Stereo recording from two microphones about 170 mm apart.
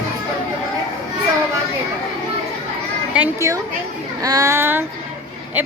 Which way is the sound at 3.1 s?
15° right (ahead or behind).